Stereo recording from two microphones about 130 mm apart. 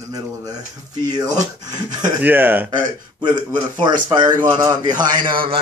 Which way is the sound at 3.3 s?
35° right (ahead or behind).